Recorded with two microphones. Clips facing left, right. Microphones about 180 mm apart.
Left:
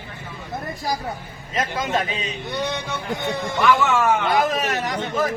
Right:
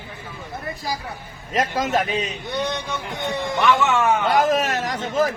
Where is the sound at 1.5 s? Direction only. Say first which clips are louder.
Right 2 dB; 40° right (ahead or behind).